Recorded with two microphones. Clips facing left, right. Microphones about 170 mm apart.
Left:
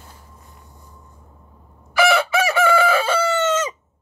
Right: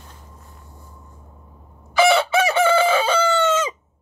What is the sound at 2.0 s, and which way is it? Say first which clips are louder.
Chicken: right 1 dB; 25° right (ahead or behind).